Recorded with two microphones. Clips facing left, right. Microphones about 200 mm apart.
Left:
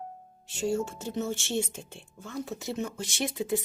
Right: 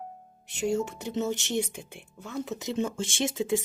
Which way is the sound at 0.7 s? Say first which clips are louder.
Right 1 dB; 20° right (ahead or behind).